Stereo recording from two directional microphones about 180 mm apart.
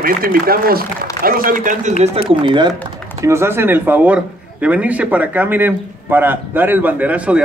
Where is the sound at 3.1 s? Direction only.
15° right (ahead or behind).